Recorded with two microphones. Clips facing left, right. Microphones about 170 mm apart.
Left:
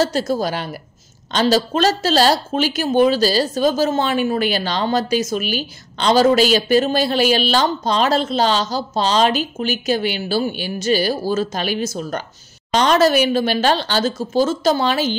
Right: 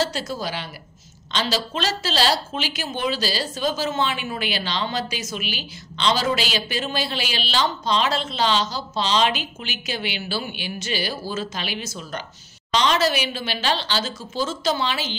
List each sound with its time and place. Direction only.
0.0 s a woman's voice: 45° left (ahead or behind)